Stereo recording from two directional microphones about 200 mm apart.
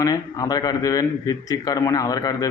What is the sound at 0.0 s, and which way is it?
A man's voice, 20° left (ahead or behind).